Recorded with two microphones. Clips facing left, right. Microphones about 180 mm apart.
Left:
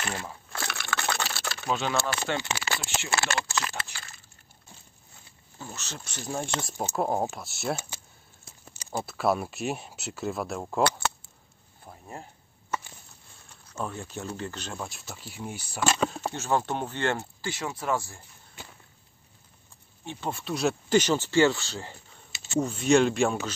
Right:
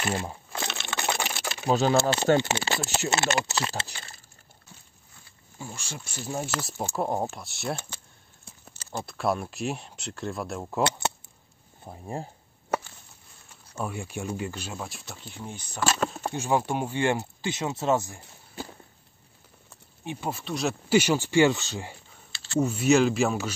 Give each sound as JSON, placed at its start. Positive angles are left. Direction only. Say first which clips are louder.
{"t": 0.1, "sound": "a sound", "louder": "right 5 dB", "side_deg": -20}
{"t": 1.7, "sound": "speech", "louder": "right 6 dB", "side_deg": -35}
{"t": 2.0, "sound": "speech", "louder": "right 8 dB", "side_deg": -25}
{"t": 5.6, "sound": "speech", "louder": "right 1 dB", "side_deg": -10}
{"t": 10.8, "sound": "keys jangling", "louder": "left 1 dB", "side_deg": -20}
{"t": 11.8, "sound": "speech", "louder": "right 7 dB", "side_deg": -30}
{"t": 13.7, "sound": "speech", "louder": "right 2 dB", "side_deg": -10}
{"t": 16.3, "sound": "speech", "louder": "right 5 dB", "side_deg": -10}
{"t": 20.1, "sound": "speech", "louder": "right 1 dB", "side_deg": -10}
{"t": 20.3, "sound": "speech", "louder": "left 5 dB", "side_deg": 0}